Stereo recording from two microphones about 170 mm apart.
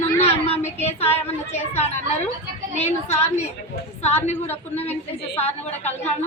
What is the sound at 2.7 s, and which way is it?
Speech, 40° left (ahead or behind).